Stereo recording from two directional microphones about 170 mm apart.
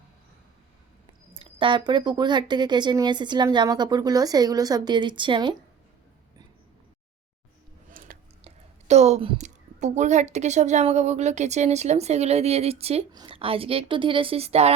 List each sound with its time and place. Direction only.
1.3 s speech: 30° right (ahead or behind)
7.9 s a sound: 60° right (ahead or behind)
8.4 s a woman's voice: 40° right (ahead or behind)